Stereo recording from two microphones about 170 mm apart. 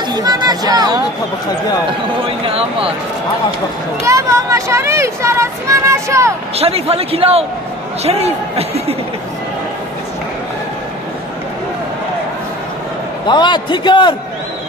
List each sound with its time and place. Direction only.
0.1 s speech: 25° right (ahead or behind)
2.4 s a man's voice: 35° right (ahead or behind)
4.0 s speech: 20° right (ahead or behind)
6.5 s a man's voice: 35° right (ahead or behind)
13.3 s a man's voice: 25° left (ahead or behind)